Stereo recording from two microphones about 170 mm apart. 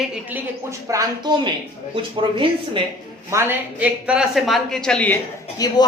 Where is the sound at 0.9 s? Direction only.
20° right (ahead or behind).